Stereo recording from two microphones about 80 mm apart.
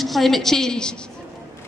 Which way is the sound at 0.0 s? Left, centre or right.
Centre.